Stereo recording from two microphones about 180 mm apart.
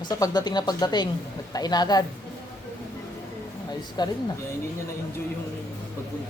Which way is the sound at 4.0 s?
25° left (ahead or behind).